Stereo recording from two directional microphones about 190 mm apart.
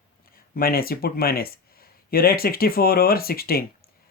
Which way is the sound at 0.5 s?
50° left (ahead or behind).